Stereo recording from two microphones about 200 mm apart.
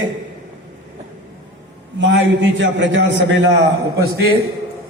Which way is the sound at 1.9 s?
65° right (ahead or behind).